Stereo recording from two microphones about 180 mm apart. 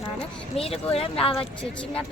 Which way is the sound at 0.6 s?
35° left (ahead or behind).